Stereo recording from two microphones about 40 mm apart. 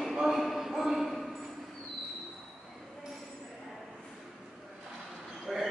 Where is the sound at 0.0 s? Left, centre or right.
Centre.